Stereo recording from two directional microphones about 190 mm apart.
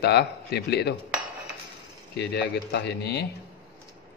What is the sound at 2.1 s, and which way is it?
Speech, 60° left (ahead or behind).